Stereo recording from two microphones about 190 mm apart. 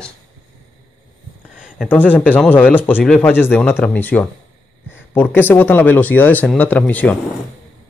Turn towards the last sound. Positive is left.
turn(degrees=10)  # may be behind; listen again after turning